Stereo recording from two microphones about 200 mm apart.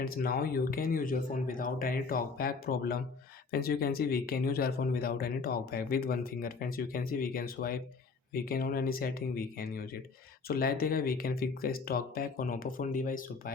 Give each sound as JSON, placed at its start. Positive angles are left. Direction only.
{"t": 0.0, "sound": "speech", "side_deg": 50}